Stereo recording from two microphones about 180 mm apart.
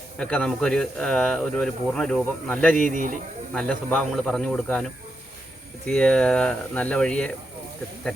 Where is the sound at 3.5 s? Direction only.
5° left (ahead or behind).